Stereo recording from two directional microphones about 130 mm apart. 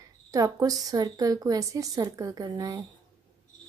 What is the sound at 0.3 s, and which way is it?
A woman's voice, 30° right (ahead or behind).